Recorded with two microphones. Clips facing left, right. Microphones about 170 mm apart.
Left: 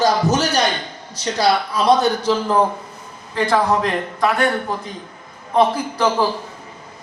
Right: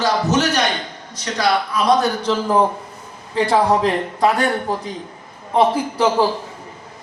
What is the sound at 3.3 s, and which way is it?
Speech, 30° right (ahead or behind).